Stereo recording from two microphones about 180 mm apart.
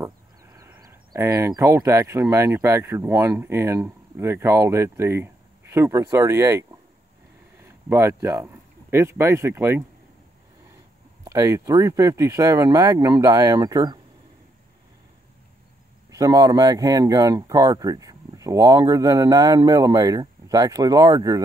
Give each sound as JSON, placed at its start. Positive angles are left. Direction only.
{"t": 0.0, "sound": "speech", "side_deg": -15}
{"t": 11.2, "sound": "speech", "side_deg": -15}
{"t": 16.1, "sound": "speech", "side_deg": -20}